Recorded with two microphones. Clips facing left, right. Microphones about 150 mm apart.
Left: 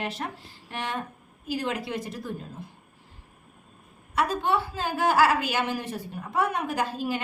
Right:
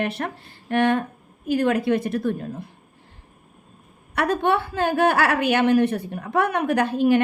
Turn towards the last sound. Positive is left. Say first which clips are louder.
# right 10 dB
turn(degrees=-65)  # may be behind; listen again after turning